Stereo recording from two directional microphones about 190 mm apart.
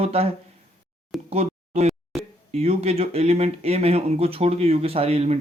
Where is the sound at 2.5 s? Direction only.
35° right (ahead or behind).